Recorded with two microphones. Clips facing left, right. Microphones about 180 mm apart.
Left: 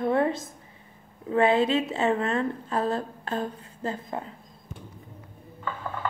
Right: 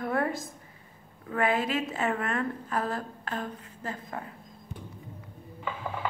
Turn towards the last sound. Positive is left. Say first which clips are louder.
# left 1 dB
turn(degrees=-10)  # may be behind; listen again after turning